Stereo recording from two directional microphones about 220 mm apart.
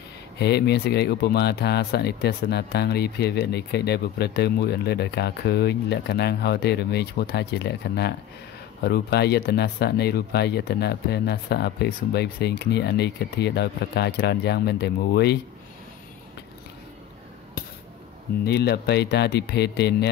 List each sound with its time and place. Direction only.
0.4 s speech: 50° left (ahead or behind)
18.4 s speech: 45° left (ahead or behind)